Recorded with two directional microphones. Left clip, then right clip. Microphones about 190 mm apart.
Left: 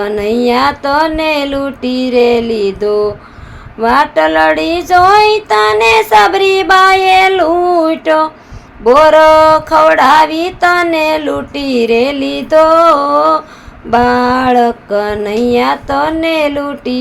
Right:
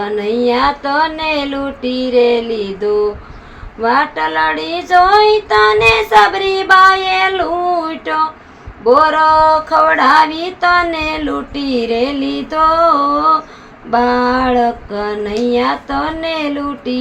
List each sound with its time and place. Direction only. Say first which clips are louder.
0.0 s a woman's voice: left 3 dB; 50° left (ahead or behind)